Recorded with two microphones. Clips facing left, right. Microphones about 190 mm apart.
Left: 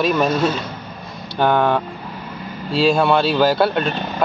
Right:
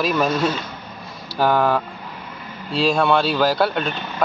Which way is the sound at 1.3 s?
5° right (ahead or behind).